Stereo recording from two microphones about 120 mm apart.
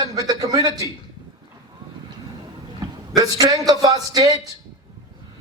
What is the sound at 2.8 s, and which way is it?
A man's voice, 30° right (ahead or behind).